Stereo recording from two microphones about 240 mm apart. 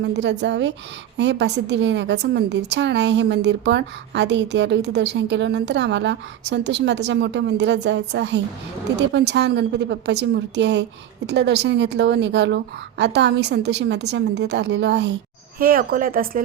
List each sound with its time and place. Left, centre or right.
0.0 s a woman's voice: right